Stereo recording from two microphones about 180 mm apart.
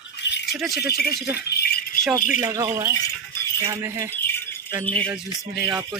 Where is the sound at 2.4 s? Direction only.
15° right (ahead or behind).